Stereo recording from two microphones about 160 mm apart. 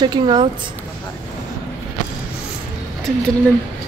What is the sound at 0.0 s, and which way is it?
Speech, 25° right (ahead or behind).